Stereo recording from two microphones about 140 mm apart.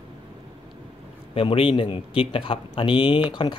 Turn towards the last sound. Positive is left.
turn(degrees=40)  # may be behind; listen again after turning